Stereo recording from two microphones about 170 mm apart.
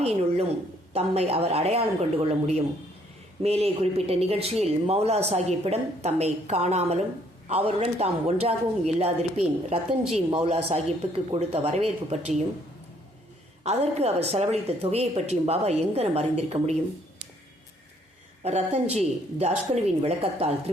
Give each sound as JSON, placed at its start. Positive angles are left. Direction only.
{"t": 0.0, "sound": "speech", "side_deg": -35}
{"t": 13.7, "sound": "speech", "side_deg": -40}
{"t": 18.4, "sound": "speech", "side_deg": -40}